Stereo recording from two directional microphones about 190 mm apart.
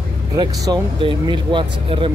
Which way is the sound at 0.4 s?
20° right (ahead or behind).